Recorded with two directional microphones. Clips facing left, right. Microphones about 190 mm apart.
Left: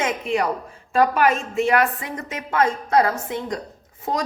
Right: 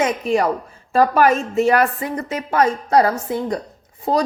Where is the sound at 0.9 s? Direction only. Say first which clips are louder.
Right 3 dB; 40° right (ahead or behind).